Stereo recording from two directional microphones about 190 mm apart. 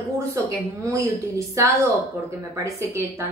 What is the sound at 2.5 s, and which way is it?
Speech, 15° right (ahead or behind).